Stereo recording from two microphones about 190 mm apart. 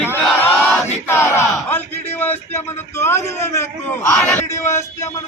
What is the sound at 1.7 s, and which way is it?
A man's voice, 10° left (ahead or behind).